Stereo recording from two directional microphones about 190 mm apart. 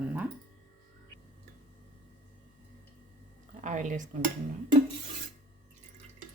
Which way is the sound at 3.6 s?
40° right (ahead or behind).